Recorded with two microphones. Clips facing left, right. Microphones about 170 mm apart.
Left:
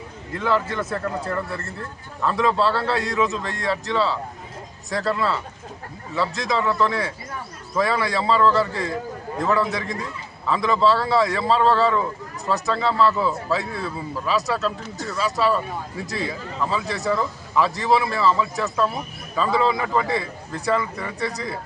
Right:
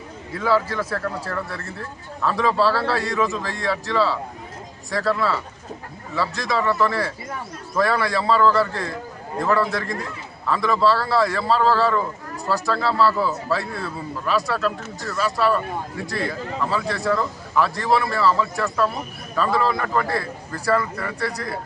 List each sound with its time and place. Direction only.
0.3 s a man's voice: 5° right (ahead or behind)